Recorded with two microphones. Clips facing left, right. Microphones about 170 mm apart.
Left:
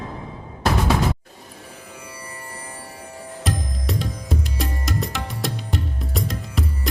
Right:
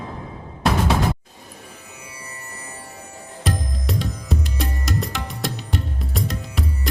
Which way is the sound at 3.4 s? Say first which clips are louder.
Right 1 dB; centre (ahead or behind).